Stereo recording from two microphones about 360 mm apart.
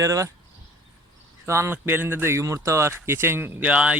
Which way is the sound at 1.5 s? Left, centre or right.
Centre.